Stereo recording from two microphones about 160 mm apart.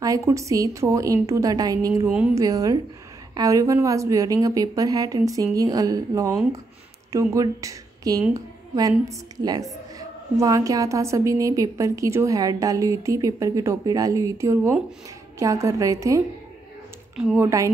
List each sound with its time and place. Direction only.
0.0 s a woman's voice: 20° right (ahead or behind)
2.0 s speech: 5° right (ahead or behind)
2.3 s a woman's voice: 20° right (ahead or behind)
17.4 s a woman's voice: 20° right (ahead or behind)